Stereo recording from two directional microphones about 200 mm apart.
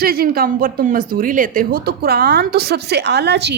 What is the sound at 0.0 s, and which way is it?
Speech, 50° right (ahead or behind).